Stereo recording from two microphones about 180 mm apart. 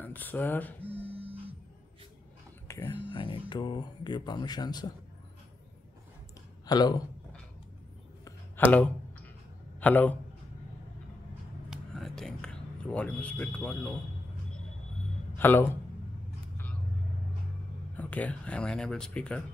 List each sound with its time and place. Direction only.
0.0 s speech: 10° left (ahead or behind)
0.8 s music: 10° right (ahead or behind)
2.7 s a sound: 15° left (ahead or behind)
3.1 s speech: 25° left (ahead or behind)
6.6 s speech: 20° left (ahead or behind)
8.5 s a sound: 10° left (ahead or behind)
9.8 s a man's voice: 10° left (ahead or behind)
11.7 s speech: centre (ahead or behind)
15.3 s speech: 10° left (ahead or behind)
17.9 s speech: 10° left (ahead or behind)